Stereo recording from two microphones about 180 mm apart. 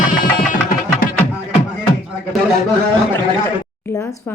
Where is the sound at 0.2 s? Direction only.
50° left (ahead or behind).